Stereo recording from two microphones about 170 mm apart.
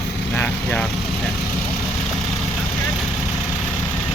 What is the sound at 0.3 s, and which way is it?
Vehicle, 10° left (ahead or behind).